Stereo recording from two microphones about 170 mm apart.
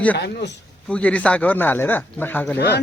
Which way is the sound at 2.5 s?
75° left (ahead or behind).